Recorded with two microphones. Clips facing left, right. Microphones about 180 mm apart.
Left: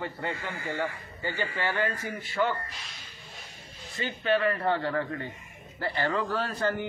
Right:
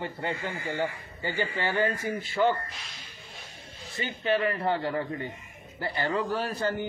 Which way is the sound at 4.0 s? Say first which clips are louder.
Even; 20° right (ahead or behind).